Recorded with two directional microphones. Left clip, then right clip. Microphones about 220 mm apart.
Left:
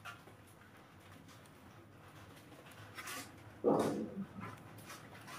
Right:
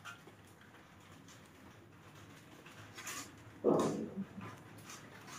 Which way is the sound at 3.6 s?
45° right (ahead or behind).